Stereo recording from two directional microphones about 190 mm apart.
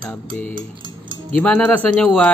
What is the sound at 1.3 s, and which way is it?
Speech, 10° left (ahead or behind).